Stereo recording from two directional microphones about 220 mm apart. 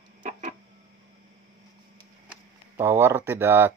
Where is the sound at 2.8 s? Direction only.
10° right (ahead or behind).